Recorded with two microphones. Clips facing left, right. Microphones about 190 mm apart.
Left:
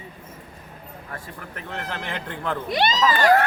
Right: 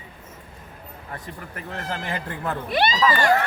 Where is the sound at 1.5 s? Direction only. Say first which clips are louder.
Right 1 dB; 5° right (ahead or behind).